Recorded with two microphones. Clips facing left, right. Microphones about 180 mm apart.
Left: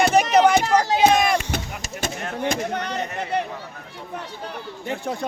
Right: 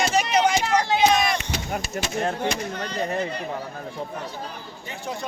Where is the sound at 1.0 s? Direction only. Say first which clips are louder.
Left 3 dB; 50° left (ahead or behind); by 3.5 s 70° left (ahead or behind).